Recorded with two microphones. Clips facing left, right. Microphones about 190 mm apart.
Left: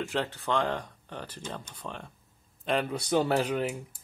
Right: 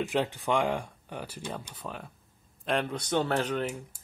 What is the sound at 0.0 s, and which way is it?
Speech, 15° right (ahead or behind).